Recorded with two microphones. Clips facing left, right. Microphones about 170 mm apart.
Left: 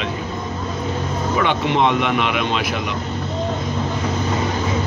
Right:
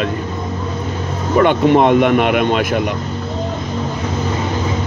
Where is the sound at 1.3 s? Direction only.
50° right (ahead or behind).